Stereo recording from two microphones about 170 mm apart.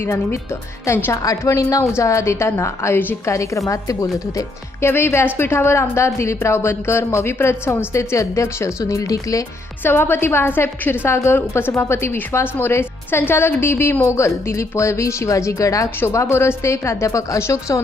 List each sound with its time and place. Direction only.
0.0 s speech: 15° left (ahead or behind)